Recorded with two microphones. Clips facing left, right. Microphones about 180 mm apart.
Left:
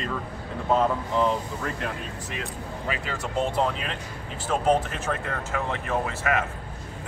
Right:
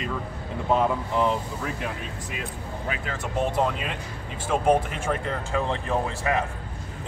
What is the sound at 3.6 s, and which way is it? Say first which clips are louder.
Speech: right 1 dB; 10° right (ahead or behind).